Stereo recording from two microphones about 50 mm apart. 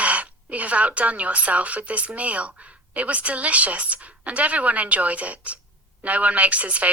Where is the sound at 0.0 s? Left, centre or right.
Right.